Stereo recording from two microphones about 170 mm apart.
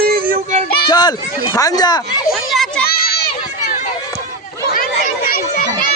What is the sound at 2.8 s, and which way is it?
Children playing, 65° left (ahead or behind).